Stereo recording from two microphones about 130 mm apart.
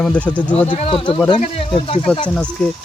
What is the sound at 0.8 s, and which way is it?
Speech, 45° left (ahead or behind).